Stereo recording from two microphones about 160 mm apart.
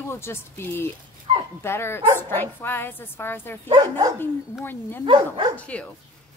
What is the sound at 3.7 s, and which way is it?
Speech, 25° right (ahead or behind).